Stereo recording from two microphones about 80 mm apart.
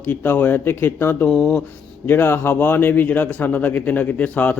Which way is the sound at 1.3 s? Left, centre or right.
Centre.